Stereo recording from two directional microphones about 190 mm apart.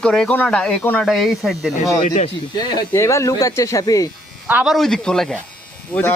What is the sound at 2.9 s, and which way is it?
Speech, 15° left (ahead or behind).